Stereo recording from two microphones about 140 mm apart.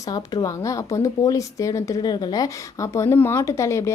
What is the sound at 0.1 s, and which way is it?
Speech, 25° left (ahead or behind).